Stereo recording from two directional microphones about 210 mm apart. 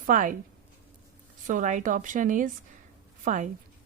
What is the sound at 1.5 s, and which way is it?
A woman's voice, 35° right (ahead or behind).